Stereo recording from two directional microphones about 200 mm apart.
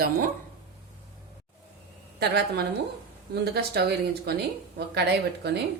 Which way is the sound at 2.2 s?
55° right (ahead or behind).